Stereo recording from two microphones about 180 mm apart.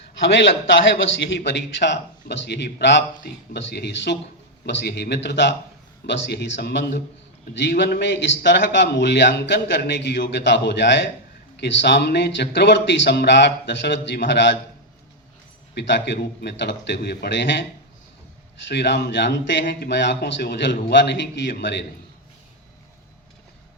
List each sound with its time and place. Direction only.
1.5 s a man's voice: 75° left (ahead or behind)
7.5 s a man's voice: 75° left (ahead or behind)
15.7 s a man's voice: 75° left (ahead or behind)
18.7 s a man's voice: 70° left (ahead or behind)